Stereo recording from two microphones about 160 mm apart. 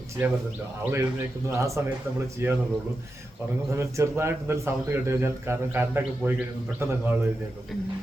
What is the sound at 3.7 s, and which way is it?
A man's voice, 20° right (ahead or behind).